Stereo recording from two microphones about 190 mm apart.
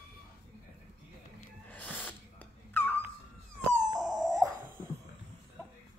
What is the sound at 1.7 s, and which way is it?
Gasp, 10° left (ahead or behind).